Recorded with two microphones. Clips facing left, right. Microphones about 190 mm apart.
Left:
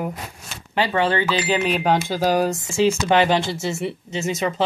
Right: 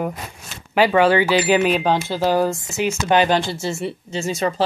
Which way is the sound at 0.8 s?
10° right (ahead or behind).